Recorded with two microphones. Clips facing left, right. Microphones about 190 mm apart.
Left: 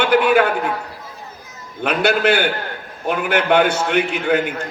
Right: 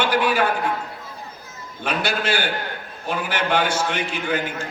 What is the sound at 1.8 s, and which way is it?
A man's voice, 60° left (ahead or behind).